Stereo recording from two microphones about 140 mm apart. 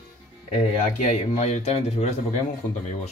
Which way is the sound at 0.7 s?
50° left (ahead or behind).